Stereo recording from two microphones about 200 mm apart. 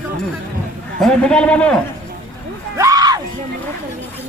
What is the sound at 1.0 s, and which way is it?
Speech, 5° left (ahead or behind).